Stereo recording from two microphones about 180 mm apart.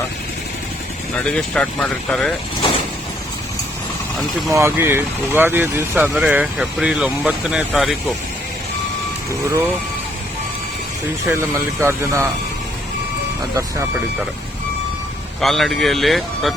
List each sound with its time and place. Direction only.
1.1 s speech: 5° left (ahead or behind)
4.4 s speech: 15° right (ahead or behind)
11.3 s speech: 15° right (ahead or behind)
15.4 s speech: centre (ahead or behind)